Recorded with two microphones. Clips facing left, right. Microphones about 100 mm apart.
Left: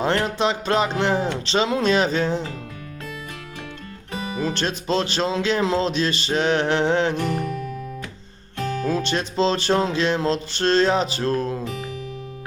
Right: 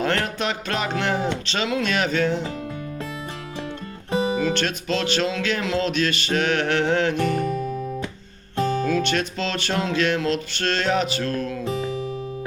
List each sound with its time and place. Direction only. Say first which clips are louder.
0.0 s music: left 3 dB; 25° left (ahead or behind)
4.1 s guitar: right 8 dB; 25° right (ahead or behind)
4.4 s music: even; 30° left (ahead or behind)
8.9 s music: right 1 dB; 30° left (ahead or behind)